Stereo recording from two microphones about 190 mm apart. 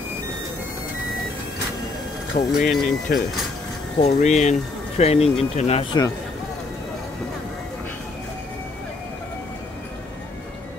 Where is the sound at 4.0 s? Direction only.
40° left (ahead or behind).